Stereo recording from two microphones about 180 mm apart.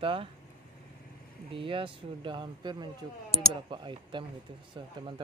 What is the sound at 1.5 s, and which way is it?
Speech, 30° right (ahead or behind).